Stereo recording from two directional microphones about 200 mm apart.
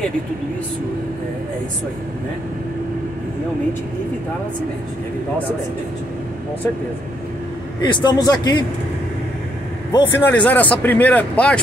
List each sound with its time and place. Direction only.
7.8 s a man's voice: 20° left (ahead or behind)
9.9 s speech: 10° left (ahead or behind)